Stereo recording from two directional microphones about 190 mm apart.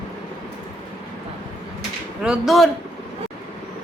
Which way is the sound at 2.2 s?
5° right (ahead or behind).